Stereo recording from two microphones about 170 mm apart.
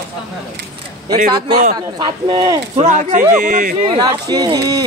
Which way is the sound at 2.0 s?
25° right (ahead or behind).